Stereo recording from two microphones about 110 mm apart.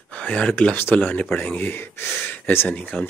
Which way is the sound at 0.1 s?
10° left (ahead or behind).